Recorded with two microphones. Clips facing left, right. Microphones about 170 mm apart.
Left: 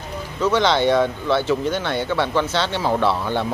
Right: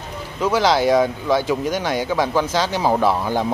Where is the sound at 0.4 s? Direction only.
10° right (ahead or behind).